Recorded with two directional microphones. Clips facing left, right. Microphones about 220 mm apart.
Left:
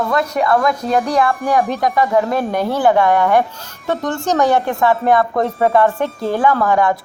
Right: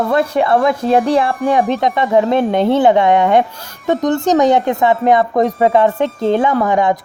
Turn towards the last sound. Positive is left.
turn(degrees=-20)  # may be behind; listen again after turning